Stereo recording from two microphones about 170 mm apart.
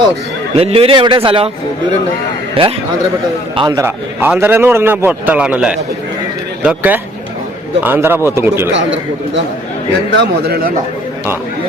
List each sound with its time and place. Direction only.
0.5 s speech: 35° right (ahead or behind)
2.6 s a man's voice: 30° right (ahead or behind)
3.8 s a man's voice: 10° right (ahead or behind)
10.2 s a man's voice: 70° right (ahead or behind)